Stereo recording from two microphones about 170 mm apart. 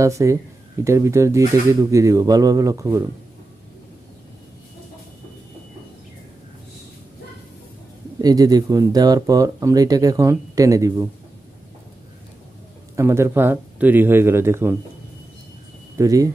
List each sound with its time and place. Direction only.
0.0 s speech: 15° right (ahead or behind)
8.2 s speech: 20° right (ahead or behind)
12.9 s speech: 15° right (ahead or behind)
16.0 s speech: 20° right (ahead or behind)